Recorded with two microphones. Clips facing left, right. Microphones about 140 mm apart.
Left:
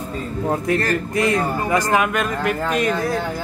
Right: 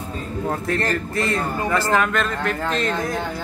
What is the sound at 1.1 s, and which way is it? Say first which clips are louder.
Speech: left 4 dB; 15° left (ahead or behind).